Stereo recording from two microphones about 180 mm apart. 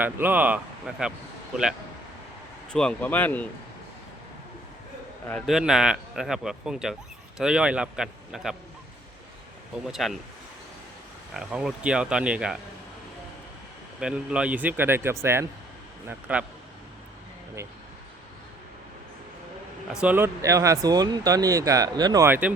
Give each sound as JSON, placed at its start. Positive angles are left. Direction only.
{"t": 0.0, "sound": "speech", "side_deg": -10}
{"t": 2.7, "sound": "speech", "side_deg": 5}
{"t": 5.3, "sound": "a man's voice", "side_deg": 0}
{"t": 9.7, "sound": "a man's voice", "side_deg": -5}
{"t": 11.3, "sound": "a man's voice", "side_deg": -5}
{"t": 14.0, "sound": "speech", "side_deg": -5}
{"t": 19.9, "sound": "speech", "side_deg": -5}